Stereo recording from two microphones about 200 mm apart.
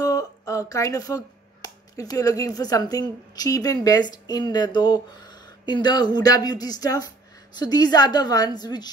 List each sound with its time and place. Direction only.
0.0 s a woman's voice: 15° left (ahead or behind)